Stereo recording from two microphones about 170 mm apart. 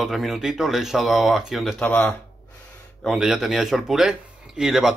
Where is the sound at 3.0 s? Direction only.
5° right (ahead or behind).